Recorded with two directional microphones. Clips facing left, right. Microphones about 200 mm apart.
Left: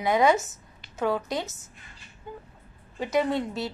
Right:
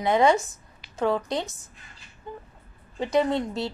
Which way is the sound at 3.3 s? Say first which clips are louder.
Right 1 dB; 25° right (ahead or behind).